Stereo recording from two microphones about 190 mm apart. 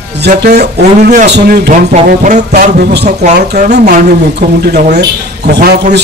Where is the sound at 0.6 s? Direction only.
60° right (ahead or behind).